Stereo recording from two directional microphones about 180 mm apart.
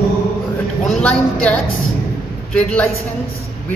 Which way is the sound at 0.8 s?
5° left (ahead or behind).